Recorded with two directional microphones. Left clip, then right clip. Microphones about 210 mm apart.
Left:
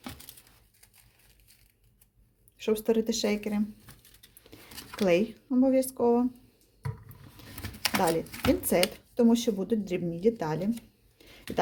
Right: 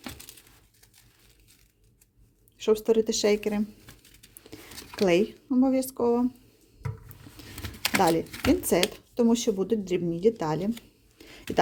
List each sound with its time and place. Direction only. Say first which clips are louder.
2.6 s speech: right 4 dB; 15° right (ahead or behind)
4.8 s speech: right 2 dB; 20° right (ahead or behind)
7.6 s a sound: right 4 dB; 10° right (ahead or behind)
8.6 s speech: right 1 dB; 20° right (ahead or behind)